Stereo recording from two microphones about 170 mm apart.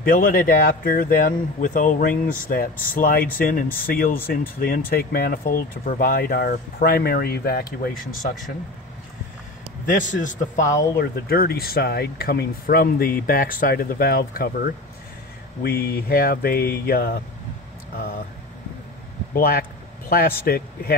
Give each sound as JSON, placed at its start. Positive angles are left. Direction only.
{"t": 0.0, "sound": "speech", "side_deg": 55}
{"t": 9.8, "sound": "a man's voice", "side_deg": 50}
{"t": 11.0, "sound": "speech", "side_deg": 65}
{"t": 19.3, "sound": "speech", "side_deg": 60}